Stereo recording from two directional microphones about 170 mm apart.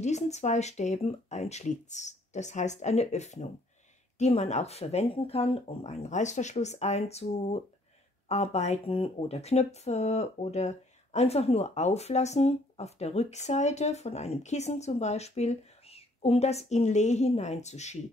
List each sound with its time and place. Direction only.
0.0 s speech: 40° left (ahead or behind)